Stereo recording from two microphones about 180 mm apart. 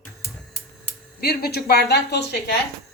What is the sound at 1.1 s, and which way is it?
A woman's voice, 60° left (ahead or behind).